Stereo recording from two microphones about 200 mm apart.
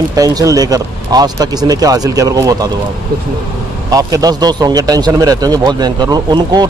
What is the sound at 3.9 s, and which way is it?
Speech, 20° right (ahead or behind).